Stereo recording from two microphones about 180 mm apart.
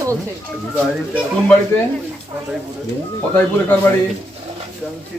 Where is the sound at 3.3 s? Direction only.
10° left (ahead or behind).